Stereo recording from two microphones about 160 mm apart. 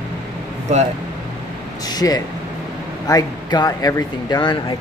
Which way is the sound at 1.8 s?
25° left (ahead or behind).